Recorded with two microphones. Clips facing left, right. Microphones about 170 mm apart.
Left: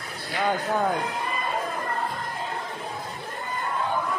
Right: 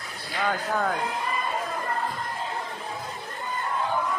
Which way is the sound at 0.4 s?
20° left (ahead or behind).